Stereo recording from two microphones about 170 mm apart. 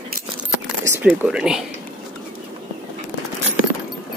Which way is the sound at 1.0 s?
5° right (ahead or behind).